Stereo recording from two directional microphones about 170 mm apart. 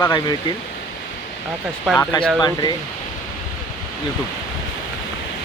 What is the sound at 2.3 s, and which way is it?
Speech, 25° left (ahead or behind).